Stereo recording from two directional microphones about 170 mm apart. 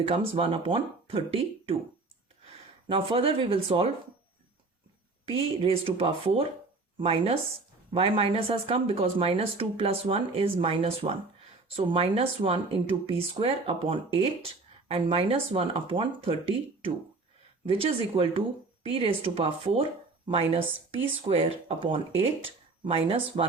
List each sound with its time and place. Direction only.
0.1 s speech: 30° right (ahead or behind)
2.9 s speech: 35° right (ahead or behind)
5.2 s speech: 35° right (ahead or behind)
17.7 s speech: 35° right (ahead or behind)